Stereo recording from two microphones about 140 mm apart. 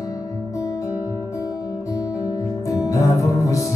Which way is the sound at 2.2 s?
25° left (ahead or behind).